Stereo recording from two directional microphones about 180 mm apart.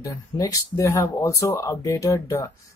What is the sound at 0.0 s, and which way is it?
Speech, 20° left (ahead or behind).